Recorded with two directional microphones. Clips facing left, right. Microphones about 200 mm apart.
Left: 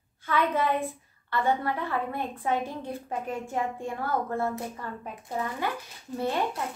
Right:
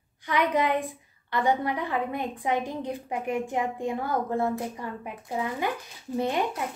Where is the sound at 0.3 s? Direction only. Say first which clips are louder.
Right 1 dB; 15° right (ahead or behind).